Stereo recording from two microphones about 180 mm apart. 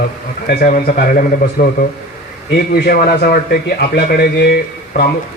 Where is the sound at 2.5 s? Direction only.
60° left (ahead or behind).